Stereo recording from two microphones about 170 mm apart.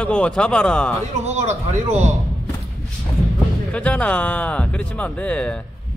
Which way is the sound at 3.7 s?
10° left (ahead or behind).